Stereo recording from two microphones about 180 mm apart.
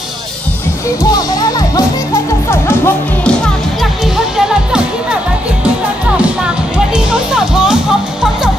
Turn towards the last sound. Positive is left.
turn(degrees=-5)  # may be behind; listen again after turning